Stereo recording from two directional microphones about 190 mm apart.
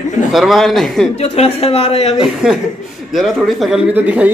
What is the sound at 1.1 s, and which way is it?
A woman's voice, 35° left (ahead or behind).